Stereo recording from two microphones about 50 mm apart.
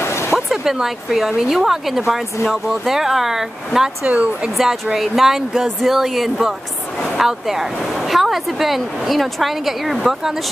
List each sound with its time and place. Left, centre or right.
0.0 s a sound: left
0.5 s speech: centre
4.0 s speech: right
4.9 s speech: centre